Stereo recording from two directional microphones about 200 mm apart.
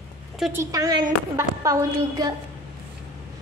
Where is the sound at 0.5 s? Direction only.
15° right (ahead or behind).